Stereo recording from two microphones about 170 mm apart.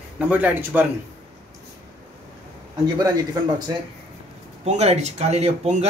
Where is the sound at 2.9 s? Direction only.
20° right (ahead or behind).